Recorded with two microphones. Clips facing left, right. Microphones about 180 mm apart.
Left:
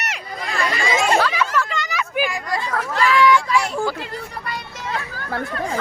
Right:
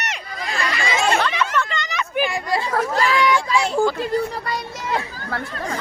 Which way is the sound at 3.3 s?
25° right (ahead or behind).